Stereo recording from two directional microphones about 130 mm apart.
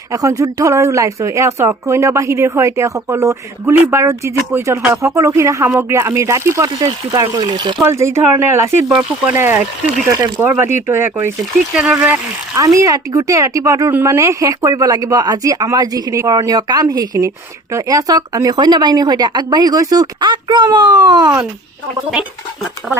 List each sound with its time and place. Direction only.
0.1 s speech: 25° right (ahead or behind)
7.9 s speech: 20° right (ahead or behind)
8.9 s speech: 5° right (ahead or behind)
9.4 s speech: 15° right (ahead or behind)
10.1 s speech: 30° right (ahead or behind)
10.4 s speech: 15° right (ahead or behind)
11.7 s speech: 5° right (ahead or behind)
11.9 s speech: 15° right (ahead or behind); by 21.3 s 30° right (ahead or behind)